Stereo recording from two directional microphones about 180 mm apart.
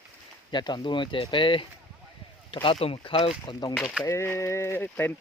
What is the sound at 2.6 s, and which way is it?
Speech, 30° left (ahead or behind).